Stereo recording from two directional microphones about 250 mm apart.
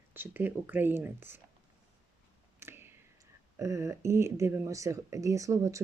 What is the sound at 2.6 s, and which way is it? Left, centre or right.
Speech, centre.